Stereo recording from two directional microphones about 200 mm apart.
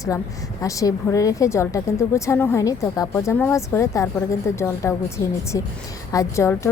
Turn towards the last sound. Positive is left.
turn(degrees=15)  # may be behind; listen again after turning